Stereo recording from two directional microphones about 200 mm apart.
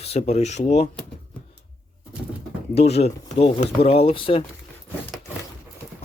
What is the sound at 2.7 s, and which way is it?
Speech, 30° left (ahead or behind).